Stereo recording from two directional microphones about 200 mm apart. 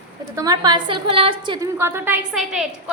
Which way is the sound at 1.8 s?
10° right (ahead or behind).